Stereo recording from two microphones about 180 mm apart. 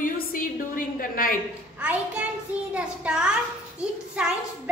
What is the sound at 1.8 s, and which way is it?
A child's voice, 5° right (ahead or behind).